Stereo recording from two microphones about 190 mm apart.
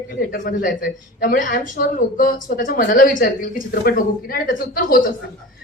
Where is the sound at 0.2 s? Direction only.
50° left (ahead or behind).